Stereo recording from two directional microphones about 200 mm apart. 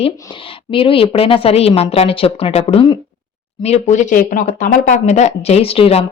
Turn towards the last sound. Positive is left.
turn(degrees=30)  # may be behind; listen again after turning